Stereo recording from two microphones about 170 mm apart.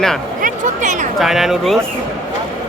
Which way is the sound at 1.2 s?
Centre (ahead or behind).